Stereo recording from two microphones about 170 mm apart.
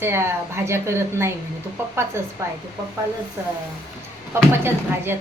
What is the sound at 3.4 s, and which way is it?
Speech, 15° right (ahead or behind).